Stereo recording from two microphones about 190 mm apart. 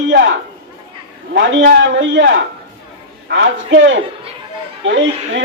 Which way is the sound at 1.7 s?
75° right (ahead or behind).